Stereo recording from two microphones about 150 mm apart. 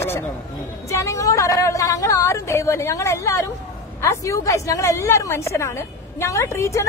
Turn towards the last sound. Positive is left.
turn(degrees=20)  # may be behind; listen again after turning